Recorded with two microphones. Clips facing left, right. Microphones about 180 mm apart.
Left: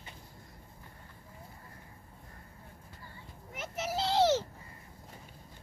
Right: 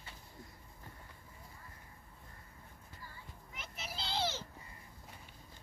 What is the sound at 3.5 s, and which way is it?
Child singing, 85° left.